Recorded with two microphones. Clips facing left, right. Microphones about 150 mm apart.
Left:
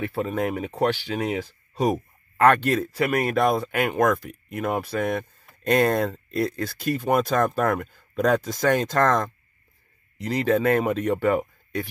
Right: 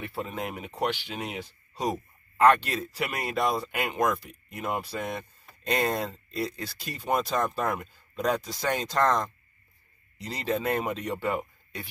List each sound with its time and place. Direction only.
0.0 s speech: 50° left (ahead or behind)